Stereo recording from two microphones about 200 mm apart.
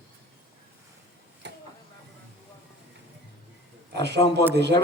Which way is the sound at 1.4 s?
60° right (ahead or behind).